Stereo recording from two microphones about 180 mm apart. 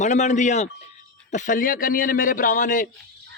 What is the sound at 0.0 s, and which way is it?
Speech, 40° left (ahead or behind).